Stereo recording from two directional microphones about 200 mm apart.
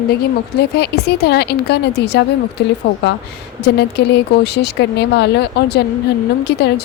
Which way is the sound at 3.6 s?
55° left (ahead or behind).